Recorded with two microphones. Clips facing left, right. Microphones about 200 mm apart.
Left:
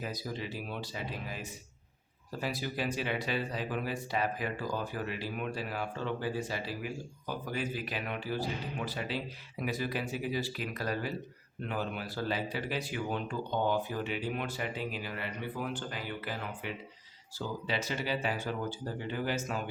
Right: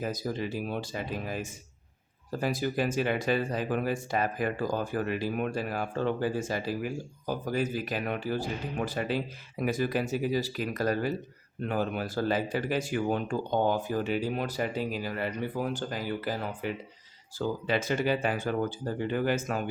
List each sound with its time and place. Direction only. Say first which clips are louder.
0.0 s speech: right 6 dB; 45° right (ahead or behind)
17.3 s speech: right 6 dB; 50° right (ahead or behind)